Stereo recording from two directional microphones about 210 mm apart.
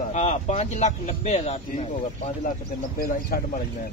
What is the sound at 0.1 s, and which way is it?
Speech, 35° left (ahead or behind).